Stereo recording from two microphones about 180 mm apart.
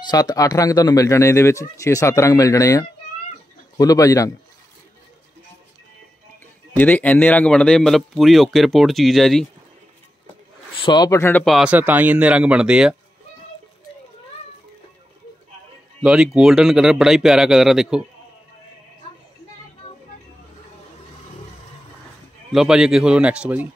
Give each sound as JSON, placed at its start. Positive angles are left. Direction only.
{"t": 0.0, "sound": "speech", "side_deg": 20}
{"t": 6.8, "sound": "speech", "side_deg": 10}
{"t": 10.8, "sound": "a man's voice", "side_deg": 25}
{"t": 11.4, "sound": "speech", "side_deg": -5}
{"t": 16.0, "sound": "speech", "side_deg": -5}
{"t": 22.5, "sound": "speech", "side_deg": -5}